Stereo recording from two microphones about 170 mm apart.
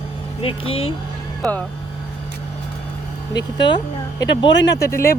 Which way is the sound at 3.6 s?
25° left (ahead or behind).